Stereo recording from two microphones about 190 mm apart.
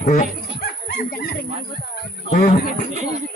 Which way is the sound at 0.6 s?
55° left (ahead or behind).